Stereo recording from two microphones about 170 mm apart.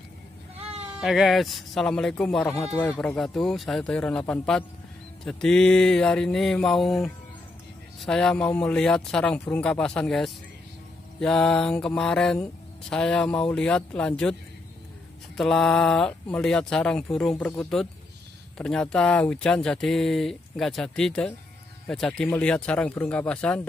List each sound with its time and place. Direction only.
0.6 s bleat: 35° right (ahead or behind)
0.9 s speech: centre (ahead or behind)
2.5 s speech: 20° left (ahead or behind)
3.0 s speech: 5° left (ahead or behind)
15.3 s speech: 5° left (ahead or behind)